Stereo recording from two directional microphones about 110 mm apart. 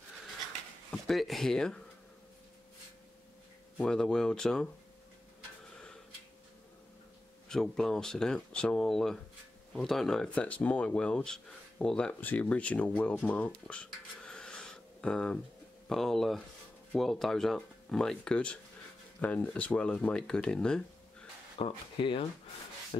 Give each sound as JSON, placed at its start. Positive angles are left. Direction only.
{"t": 1.0, "sound": "speech", "side_deg": 0}
{"t": 3.7, "sound": "speech", "side_deg": 5}
{"t": 7.4, "sound": "speech", "side_deg": 5}
{"t": 13.7, "sound": "a sound", "side_deg": 10}
{"t": 15.9, "sound": "speech", "side_deg": 0}
{"t": 21.5, "sound": "speech", "side_deg": 55}